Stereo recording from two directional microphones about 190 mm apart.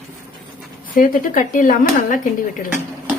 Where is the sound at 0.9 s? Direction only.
45° left (ahead or behind).